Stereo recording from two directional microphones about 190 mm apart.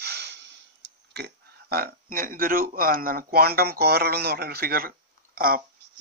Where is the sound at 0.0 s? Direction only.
60° right (ahead or behind).